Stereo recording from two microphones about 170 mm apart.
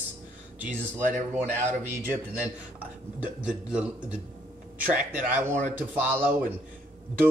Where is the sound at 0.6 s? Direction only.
10° right (ahead or behind).